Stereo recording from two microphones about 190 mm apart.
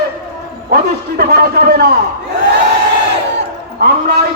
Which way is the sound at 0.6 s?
55° right (ahead or behind).